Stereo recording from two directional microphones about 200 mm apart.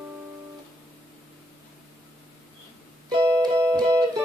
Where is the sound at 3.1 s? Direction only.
15° right (ahead or behind).